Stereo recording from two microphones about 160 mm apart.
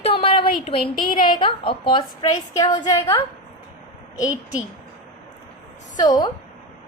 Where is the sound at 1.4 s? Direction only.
30° left (ahead or behind).